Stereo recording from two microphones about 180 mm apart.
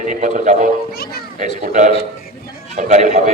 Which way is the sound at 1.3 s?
45° right (ahead or behind).